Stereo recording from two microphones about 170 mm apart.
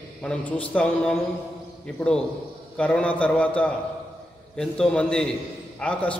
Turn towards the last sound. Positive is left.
turn(degrees=5)  # may be behind; listen again after turning